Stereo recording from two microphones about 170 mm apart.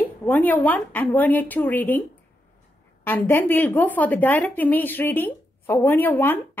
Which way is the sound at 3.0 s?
10° left (ahead or behind).